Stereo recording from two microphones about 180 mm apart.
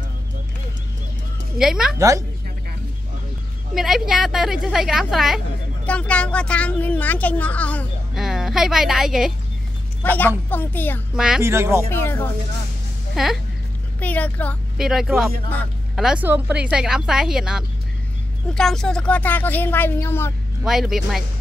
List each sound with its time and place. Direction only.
1.6 s a woman's voice: 5° right (ahead or behind)
2.0 s speech: 15° right (ahead or behind)
3.7 s a woman's voice: centre (ahead or behind)
8.2 s speech: 5° right (ahead or behind)
10.0 s a woman's voice: 10° left (ahead or behind)
11.1 s a woman's voice: 5° right (ahead or behind)
11.4 s speech: 15° right (ahead or behind)
11.9 s a woman's voice: 10° left (ahead or behind)
13.1 s speech: centre (ahead or behind)
13.9 s a woman's voice: 10° left (ahead or behind)
14.8 s a woman's voice: 5° right (ahead or behind); by 20.3 s 15° left (ahead or behind)
20.6 s a woman's voice: 5° right (ahead or behind)